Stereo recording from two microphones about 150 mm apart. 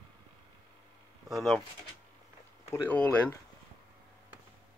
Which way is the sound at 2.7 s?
10° left (ahead or behind).